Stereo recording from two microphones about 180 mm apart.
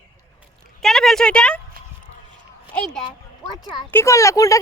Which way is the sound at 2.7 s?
5° left (ahead or behind).